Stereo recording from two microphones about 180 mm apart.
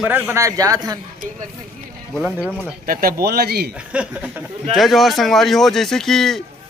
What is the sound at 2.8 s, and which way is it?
Speech, 55° right (ahead or behind).